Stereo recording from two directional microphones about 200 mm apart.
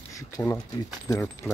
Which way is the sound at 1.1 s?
15° left (ahead or behind).